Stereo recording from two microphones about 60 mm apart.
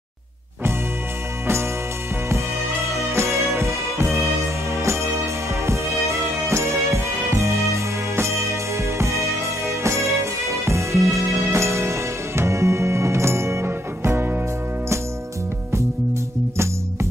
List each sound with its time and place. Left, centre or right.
2.9 s music: right